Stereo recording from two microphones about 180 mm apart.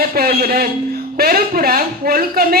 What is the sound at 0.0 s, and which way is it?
A woman's voice, 55° right (ahead or behind).